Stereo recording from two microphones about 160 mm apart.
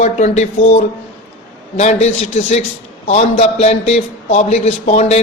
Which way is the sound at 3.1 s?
45° left (ahead or behind).